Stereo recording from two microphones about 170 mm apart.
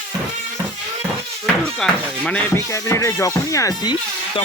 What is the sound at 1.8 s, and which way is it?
Music, 5° left (ahead or behind).